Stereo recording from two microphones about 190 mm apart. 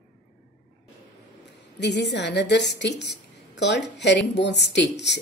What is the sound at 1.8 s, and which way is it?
A woman's voice, 65° left (ahead or behind).